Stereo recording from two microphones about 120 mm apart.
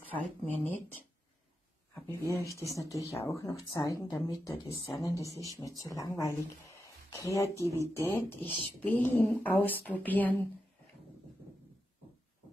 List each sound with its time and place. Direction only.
0.1 s speech: 15° left (ahead or behind)
2.0 s speech: 20° left (ahead or behind)